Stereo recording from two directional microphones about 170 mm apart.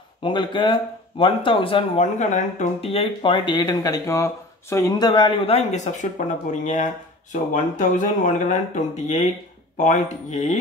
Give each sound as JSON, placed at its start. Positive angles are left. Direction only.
{"t": 0.2, "sound": "speech", "side_deg": 30}
{"t": 2.1, "sound": "speech", "side_deg": 45}